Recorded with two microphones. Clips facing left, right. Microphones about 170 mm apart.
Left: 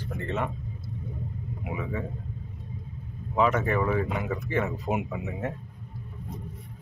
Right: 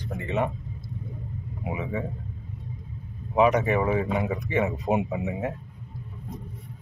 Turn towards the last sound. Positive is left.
turn(degrees=-20)  # may be behind; listen again after turning